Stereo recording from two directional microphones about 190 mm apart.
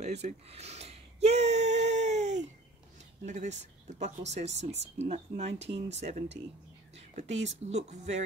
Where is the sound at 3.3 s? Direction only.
40° right (ahead or behind).